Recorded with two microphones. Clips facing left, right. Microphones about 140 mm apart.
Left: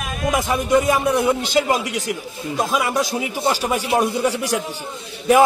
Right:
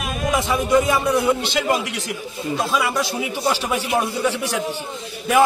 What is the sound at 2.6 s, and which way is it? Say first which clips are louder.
Speech: left 2 dB; 15° left (ahead or behind).